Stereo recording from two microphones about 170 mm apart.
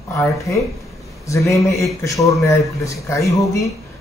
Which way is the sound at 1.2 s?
20° left (ahead or behind).